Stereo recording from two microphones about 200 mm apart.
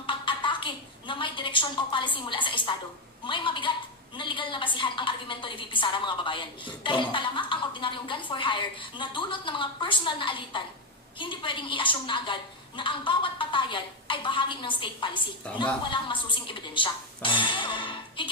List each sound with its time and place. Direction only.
0.0 s a woman's voice: 25° left (ahead or behind)
15.4 s a woman's voice: 5° left (ahead or behind)
15.9 s speech: 25° left (ahead or behind)